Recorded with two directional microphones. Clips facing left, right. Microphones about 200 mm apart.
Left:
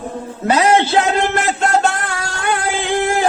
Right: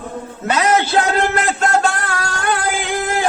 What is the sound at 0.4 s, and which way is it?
Speech, 30° left (ahead or behind).